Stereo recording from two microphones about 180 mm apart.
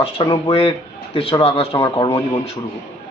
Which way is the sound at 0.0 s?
30° left (ahead or behind).